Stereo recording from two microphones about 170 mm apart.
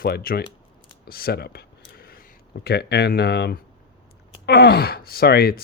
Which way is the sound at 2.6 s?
70° left (ahead or behind).